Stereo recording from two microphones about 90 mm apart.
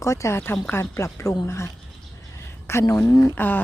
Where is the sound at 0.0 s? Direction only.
30° left (ahead or behind).